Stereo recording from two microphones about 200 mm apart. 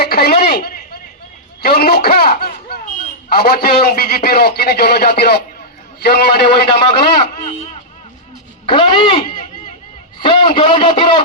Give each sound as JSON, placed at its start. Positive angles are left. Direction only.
{"t": 0.0, "sound": "a sound", "side_deg": 55}
{"t": 1.6, "sound": "a man's voice", "side_deg": 50}
{"t": 6.7, "sound": "a man's voice", "side_deg": 25}